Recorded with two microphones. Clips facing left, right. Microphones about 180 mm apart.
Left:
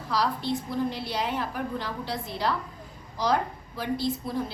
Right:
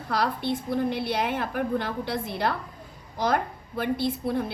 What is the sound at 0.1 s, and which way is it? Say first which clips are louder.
A woman's voice: right 1 dB; 55° right (ahead or behind).